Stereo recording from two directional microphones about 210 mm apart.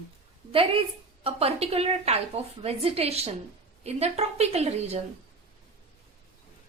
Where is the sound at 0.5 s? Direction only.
25° right (ahead or behind).